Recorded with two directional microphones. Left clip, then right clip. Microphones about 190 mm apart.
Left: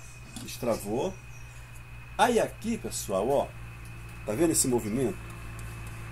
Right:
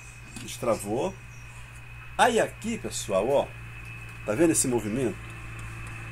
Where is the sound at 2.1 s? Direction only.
30° right (ahead or behind).